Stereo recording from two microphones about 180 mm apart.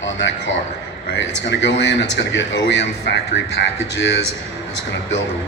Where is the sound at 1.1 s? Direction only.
80° left.